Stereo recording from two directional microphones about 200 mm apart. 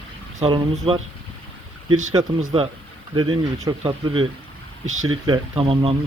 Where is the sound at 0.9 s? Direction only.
25° right (ahead or behind).